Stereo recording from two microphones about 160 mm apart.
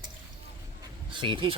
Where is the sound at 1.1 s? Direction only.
30° right (ahead or behind).